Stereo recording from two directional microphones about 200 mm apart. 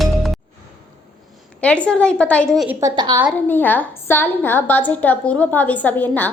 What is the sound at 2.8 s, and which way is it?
Speech, 20° right (ahead or behind).